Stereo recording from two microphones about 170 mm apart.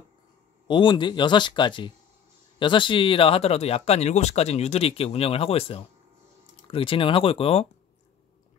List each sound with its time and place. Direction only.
0.7 s speech: 30° left (ahead or behind)